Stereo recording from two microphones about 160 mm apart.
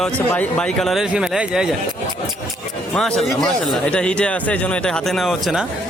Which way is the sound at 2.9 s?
5° left (ahead or behind).